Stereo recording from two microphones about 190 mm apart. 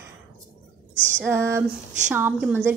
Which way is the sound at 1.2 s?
10° right (ahead or behind).